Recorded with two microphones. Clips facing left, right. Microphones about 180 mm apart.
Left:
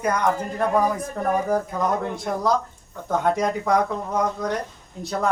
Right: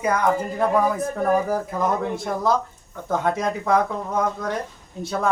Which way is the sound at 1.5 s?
5° right (ahead or behind).